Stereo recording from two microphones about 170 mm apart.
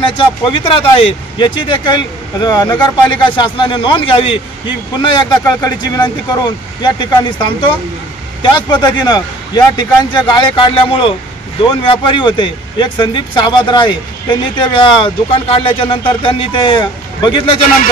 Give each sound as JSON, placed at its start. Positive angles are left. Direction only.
{"t": 0.0, "sound": "speech", "side_deg": 30}